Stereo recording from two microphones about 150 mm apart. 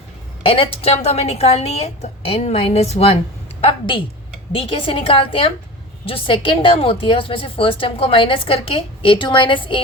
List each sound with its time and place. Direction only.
0.4 s a woman's voice: 35° left (ahead or behind)